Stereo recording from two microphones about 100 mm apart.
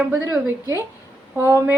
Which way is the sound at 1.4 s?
30° right (ahead or behind).